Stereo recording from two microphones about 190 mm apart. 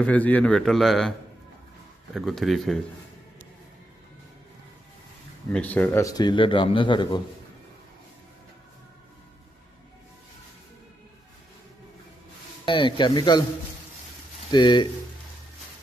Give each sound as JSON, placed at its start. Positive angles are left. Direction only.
{"t": 0.0, "sound": "a man's voice", "side_deg": 10}
{"t": 2.1, "sound": "a man's voice", "side_deg": 0}
{"t": 5.5, "sound": "a man's voice", "side_deg": 10}
{"t": 12.6, "sound": "a man's voice", "side_deg": 25}
{"t": 14.5, "sound": "a man's voice", "side_deg": 25}